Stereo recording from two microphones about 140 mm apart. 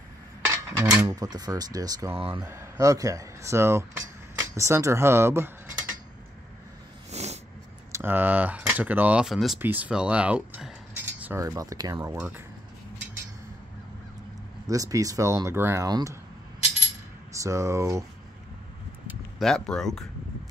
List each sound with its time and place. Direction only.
0.7 s speech: 25° right (ahead or behind)
2.1 s speech: 40° right (ahead or behind)
2.4 s speech: 20° right (ahead or behind)
7.1 s a sound: 50° right (ahead or behind)
7.9 s speech: 15° right (ahead or behind)
9.6 s speech: 10° right (ahead or behind)
11.3 s speech: 25° right (ahead or behind)
14.7 s speech: 25° right (ahead or behind)
17.3 s speech: 20° right (ahead or behind)
19.3 s speech: 5° left (ahead or behind)